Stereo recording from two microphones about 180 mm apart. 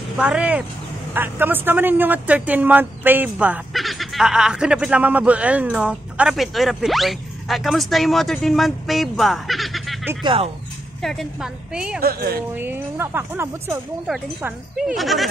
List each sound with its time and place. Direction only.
0.2 s a woman's voice: 10° right (ahead or behind)
10.2 s speech: 30° right (ahead or behind)
11.0 s speech: centre (ahead or behind)
12.0 s a woman's voice: 55° right (ahead or behind)
12.5 s a woman's voice: 10° right (ahead or behind)